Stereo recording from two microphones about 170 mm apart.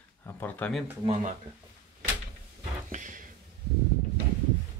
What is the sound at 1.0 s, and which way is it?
Speech, 40° right (ahead or behind).